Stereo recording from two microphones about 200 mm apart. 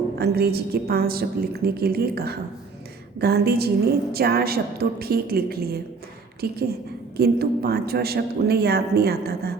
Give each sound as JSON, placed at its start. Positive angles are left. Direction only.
{"t": 0.2, "sound": "a man's voice", "side_deg": -50}